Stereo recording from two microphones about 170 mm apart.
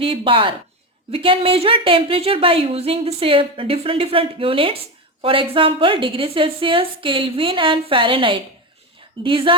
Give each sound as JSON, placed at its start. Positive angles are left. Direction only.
{"t": 0.0, "sound": "a woman's voice", "side_deg": -30}